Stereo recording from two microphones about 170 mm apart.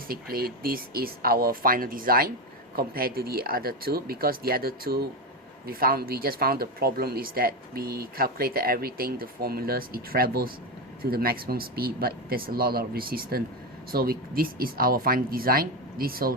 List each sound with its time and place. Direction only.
0.1 s speech: 60° right (ahead or behind)